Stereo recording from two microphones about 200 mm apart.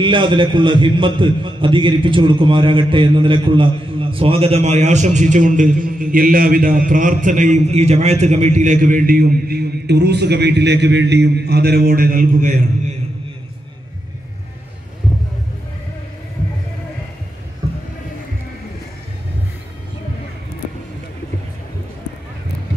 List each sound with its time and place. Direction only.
0.0 s a man's voice: 25° right (ahead or behind); by 12.5 s 40° right (ahead or behind)